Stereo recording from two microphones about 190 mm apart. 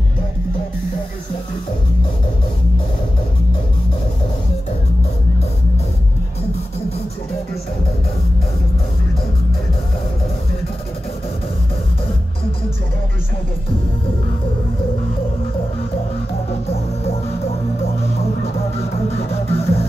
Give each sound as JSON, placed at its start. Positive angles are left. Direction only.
{"t": 18.4, "sound": "music", "side_deg": 30}